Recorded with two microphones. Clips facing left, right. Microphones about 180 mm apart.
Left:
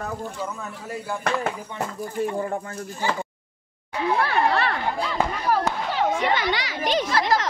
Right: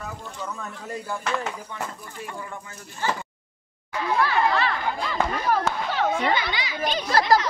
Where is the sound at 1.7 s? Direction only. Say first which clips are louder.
Left 7 dB; 35° left (ahead or behind).